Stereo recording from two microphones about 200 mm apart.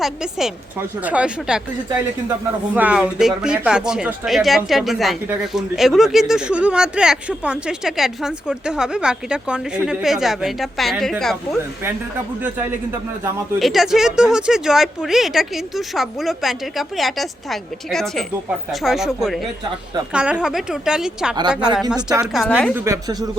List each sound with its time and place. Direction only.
0.0 s speech: centre (ahead or behind)
2.7 s speech: 5° right (ahead or behind)
13.6 s speech: centre (ahead or behind)
22.7 s a woman's voice: 15° right (ahead or behind)